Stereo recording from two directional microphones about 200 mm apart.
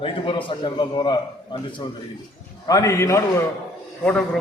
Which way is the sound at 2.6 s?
15° left (ahead or behind).